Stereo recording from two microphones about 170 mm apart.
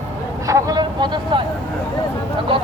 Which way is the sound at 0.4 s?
20° right (ahead or behind).